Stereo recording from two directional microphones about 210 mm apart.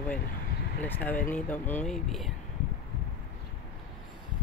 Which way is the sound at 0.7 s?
10° left (ahead or behind).